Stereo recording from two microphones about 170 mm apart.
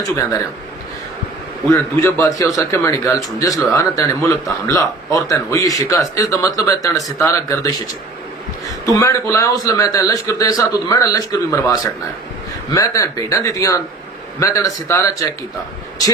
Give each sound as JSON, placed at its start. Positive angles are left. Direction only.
{"t": 0.0, "sound": "a man's voice", "side_deg": 20}
{"t": 1.7, "sound": "a man's voice", "side_deg": 15}
{"t": 8.9, "sound": "a man's voice", "side_deg": 20}